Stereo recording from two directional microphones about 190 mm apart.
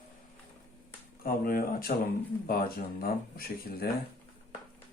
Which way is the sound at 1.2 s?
50° left (ahead or behind).